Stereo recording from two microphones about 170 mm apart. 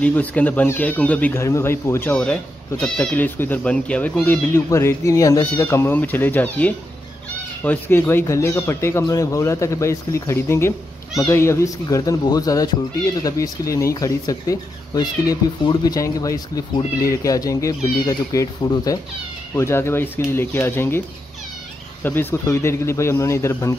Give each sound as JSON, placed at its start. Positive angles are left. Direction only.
{"t": 0.0, "sound": "speech", "side_deg": 10}
{"t": 22.0, "sound": "speech", "side_deg": 10}